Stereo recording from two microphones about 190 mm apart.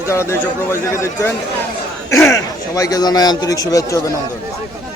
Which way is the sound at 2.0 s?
15° left (ahead or behind).